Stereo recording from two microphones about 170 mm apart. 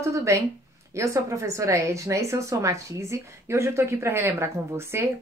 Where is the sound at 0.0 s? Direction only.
15° right (ahead or behind).